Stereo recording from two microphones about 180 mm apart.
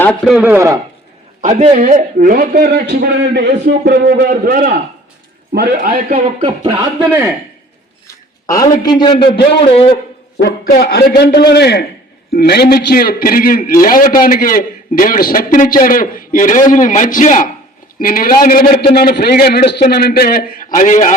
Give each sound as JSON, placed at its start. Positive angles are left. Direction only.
{"t": 0.3, "sound": "a man's voice", "side_deg": -5}
{"t": 1.4, "sound": "a man's voice", "side_deg": -45}
{"t": 5.5, "sound": "a man's voice", "side_deg": -65}
{"t": 6.4, "sound": "speech", "side_deg": -20}
{"t": 8.0, "sound": "a man's voice", "side_deg": 20}
{"t": 10.3, "sound": "a man's voice", "side_deg": 65}